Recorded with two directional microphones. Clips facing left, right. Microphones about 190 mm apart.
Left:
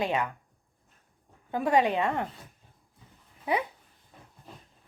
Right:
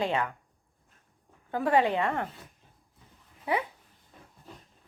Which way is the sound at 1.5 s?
15° left (ahead or behind).